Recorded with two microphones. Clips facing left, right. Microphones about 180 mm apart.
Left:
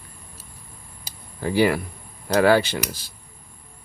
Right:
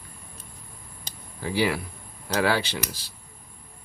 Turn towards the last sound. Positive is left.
turn(degrees=50)  # may be behind; listen again after turning